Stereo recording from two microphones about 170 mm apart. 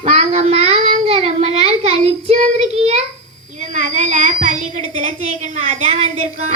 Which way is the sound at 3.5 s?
45° right (ahead or behind).